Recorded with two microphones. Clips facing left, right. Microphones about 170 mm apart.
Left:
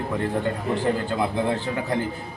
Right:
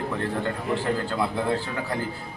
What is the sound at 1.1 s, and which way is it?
Speech, 20° left (ahead or behind).